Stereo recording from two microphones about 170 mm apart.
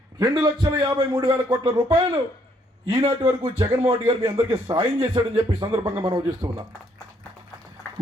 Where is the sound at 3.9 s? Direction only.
25° right (ahead or behind).